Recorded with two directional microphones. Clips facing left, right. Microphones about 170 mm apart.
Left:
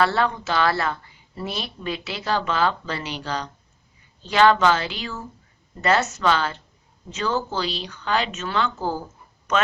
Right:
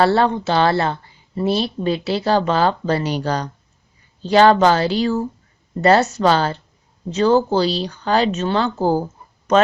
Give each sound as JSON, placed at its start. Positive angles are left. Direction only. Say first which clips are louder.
{"t": 0.0, "sound": "a woman's voice", "louder": "right 6 dB", "side_deg": -30}